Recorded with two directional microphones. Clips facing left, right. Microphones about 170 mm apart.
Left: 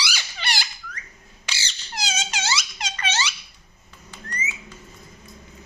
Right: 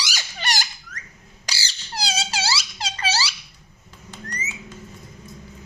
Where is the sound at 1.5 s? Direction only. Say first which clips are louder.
Right 1 dB; 35° right (ahead or behind).